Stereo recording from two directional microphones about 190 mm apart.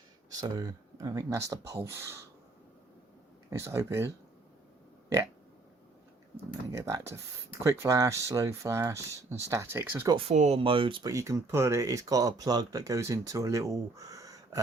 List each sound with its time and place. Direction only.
0.3 s speech: 20° right (ahead or behind)
3.5 s speech: 15° right (ahead or behind)
6.7 s speech: 15° right (ahead or behind)
10.2 s speech: 35° right (ahead or behind); by 14.6 s 20° right (ahead or behind)